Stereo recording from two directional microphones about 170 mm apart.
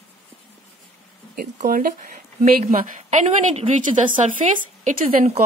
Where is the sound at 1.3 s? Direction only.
55° right (ahead or behind).